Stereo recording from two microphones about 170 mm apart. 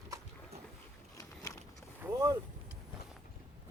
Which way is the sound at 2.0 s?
20° right (ahead or behind).